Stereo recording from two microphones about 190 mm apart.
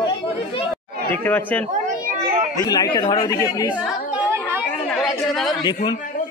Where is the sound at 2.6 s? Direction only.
20° left (ahead or behind).